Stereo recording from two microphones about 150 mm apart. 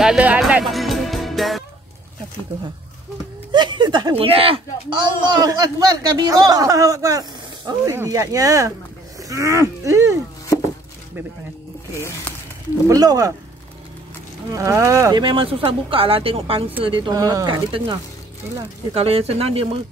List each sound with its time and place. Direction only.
0.0 s music: 5° right (ahead or behind)
3.5 s speech: 30° right (ahead or behind)
11.9 s speech: 15° left (ahead or behind)
12.8 s speech: 25° right (ahead or behind)
14.5 s speech: 20° right (ahead or behind)
15.2 s speech: 35° right (ahead or behind)
18.9 s speech: 40° right (ahead or behind)